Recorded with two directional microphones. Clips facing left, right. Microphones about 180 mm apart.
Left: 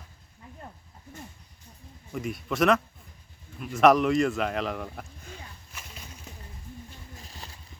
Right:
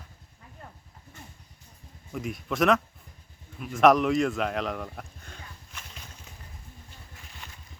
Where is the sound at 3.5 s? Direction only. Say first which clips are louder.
Even; centre (ahead or behind).